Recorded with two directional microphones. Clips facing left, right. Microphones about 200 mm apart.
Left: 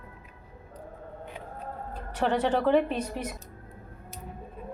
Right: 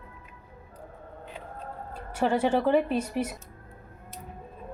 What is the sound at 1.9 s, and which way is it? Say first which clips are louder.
Speech: right 1 dB; 10° right (ahead or behind).